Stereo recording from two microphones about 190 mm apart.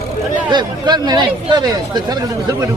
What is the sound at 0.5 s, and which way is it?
Speech, 20° right (ahead or behind).